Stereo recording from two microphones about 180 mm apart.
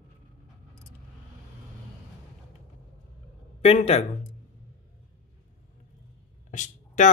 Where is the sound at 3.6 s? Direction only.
35° left (ahead or behind).